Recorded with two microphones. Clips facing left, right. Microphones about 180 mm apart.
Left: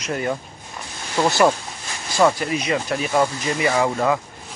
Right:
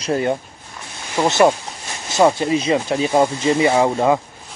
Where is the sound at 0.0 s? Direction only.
30° right (ahead or behind).